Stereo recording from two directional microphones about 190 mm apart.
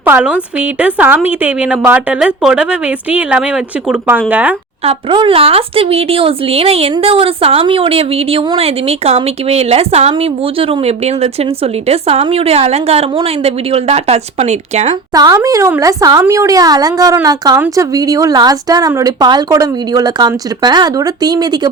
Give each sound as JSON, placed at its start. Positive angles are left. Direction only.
{"t": 0.0, "sound": "a woman's voice", "side_deg": -10}
{"t": 4.8, "sound": "speech", "side_deg": -30}
{"t": 15.1, "sound": "speech", "side_deg": -20}